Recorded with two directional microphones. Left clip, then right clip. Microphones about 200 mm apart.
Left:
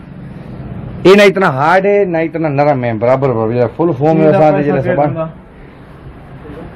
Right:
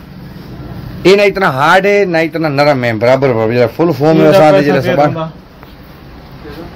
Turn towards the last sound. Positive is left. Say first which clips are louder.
# right 3 dB
turn(degrees=-10)  # may be behind; listen again after turning